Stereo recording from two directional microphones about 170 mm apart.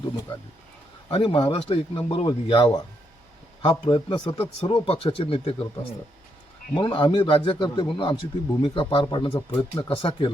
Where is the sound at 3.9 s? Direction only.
30° left (ahead or behind).